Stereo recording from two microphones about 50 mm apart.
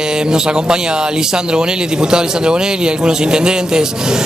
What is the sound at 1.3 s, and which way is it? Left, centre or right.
Speech, centre.